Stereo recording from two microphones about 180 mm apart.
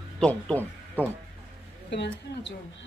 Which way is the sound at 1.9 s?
75° left (ahead or behind).